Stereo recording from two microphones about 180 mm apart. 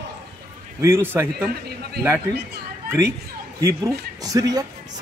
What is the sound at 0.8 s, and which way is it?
Speech, 15° right (ahead or behind).